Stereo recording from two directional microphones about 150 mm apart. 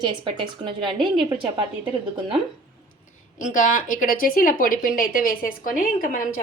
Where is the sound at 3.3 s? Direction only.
60° left (ahead or behind).